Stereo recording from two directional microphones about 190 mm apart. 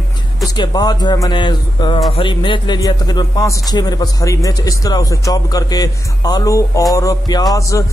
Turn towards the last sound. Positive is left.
turn(degrees=15)  # may be behind; listen again after turning